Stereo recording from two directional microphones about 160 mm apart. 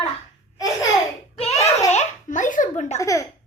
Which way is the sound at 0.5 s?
20° left (ahead or behind).